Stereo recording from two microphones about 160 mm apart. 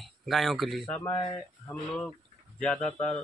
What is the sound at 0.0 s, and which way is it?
Speech, centre (ahead or behind).